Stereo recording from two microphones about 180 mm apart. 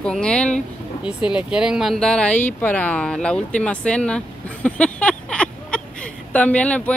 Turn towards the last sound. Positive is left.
turn(degrees=5)  # may be behind; listen again after turning